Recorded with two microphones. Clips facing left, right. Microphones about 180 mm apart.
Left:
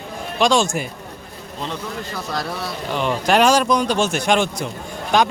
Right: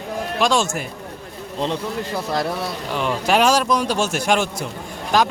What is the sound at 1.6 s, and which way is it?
Speech, 30° right (ahead or behind).